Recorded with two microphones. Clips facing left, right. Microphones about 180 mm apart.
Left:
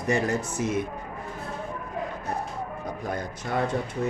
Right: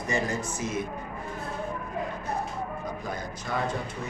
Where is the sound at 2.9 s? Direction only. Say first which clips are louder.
Left 3 dB; 60° left (ahead or behind).